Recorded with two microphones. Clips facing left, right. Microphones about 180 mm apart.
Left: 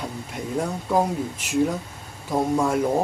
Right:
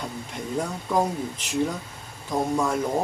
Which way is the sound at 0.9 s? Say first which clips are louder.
Left 2 dB; 5° left (ahead or behind).